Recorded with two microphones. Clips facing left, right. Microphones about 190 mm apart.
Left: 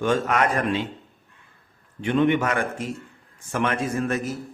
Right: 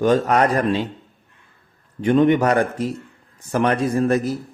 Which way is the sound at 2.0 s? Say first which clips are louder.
Right 5 dB; 40° right (ahead or behind).